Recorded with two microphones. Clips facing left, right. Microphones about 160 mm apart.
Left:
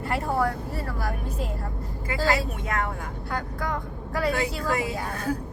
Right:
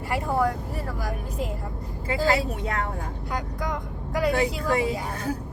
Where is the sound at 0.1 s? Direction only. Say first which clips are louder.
Right 1 dB; 20° right (ahead or behind).